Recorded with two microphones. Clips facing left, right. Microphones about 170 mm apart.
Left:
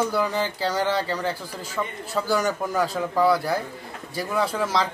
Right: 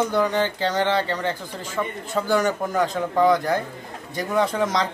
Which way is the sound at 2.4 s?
10° left (ahead or behind).